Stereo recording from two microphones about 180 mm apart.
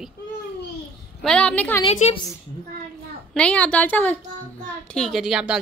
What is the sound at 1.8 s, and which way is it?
Speech, 35° left (ahead or behind).